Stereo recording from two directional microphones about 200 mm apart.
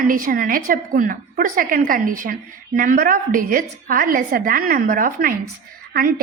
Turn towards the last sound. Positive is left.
turn(degrees=-45)  # may be behind; listen again after turning